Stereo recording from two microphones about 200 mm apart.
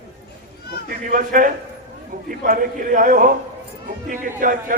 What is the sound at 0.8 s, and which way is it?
A man's voice, 45° right (ahead or behind).